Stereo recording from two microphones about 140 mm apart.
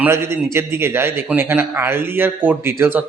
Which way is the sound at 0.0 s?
20° right (ahead or behind).